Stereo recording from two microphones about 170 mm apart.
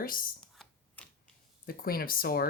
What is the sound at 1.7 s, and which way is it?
Speech, 60° left (ahead or behind).